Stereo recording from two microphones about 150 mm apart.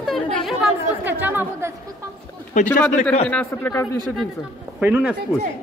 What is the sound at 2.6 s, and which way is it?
Speech, 55° left (ahead or behind).